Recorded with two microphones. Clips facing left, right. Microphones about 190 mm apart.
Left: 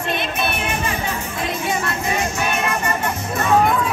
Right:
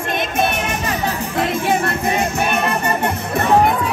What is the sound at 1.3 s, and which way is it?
Music, 60° right (ahead or behind).